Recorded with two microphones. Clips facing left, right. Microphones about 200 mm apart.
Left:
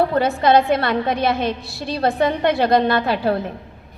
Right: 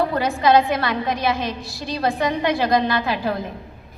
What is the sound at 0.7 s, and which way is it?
Speech, 60° left (ahead or behind).